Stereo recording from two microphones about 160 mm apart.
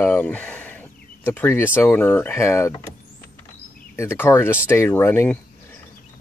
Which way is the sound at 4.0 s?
15° left (ahead or behind).